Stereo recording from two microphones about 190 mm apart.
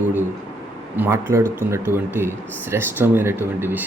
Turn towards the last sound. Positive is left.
turn(degrees=-10)  # may be behind; listen again after turning